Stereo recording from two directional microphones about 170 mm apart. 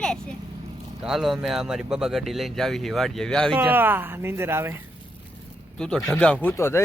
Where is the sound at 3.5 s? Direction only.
10° right (ahead or behind).